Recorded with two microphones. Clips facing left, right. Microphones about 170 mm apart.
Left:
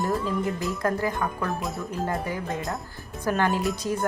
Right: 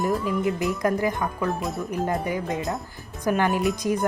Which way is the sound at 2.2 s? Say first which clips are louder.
Right 3 dB; 20° right (ahead or behind).